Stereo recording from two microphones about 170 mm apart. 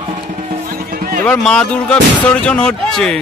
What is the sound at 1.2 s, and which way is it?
Speech, 5° left (ahead or behind).